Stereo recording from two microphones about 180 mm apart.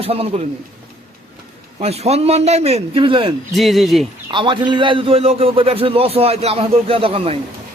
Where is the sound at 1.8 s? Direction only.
35° right (ahead or behind).